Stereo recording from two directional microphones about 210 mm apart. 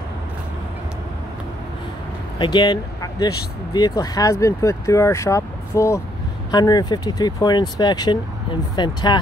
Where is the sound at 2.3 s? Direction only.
20° left (ahead or behind).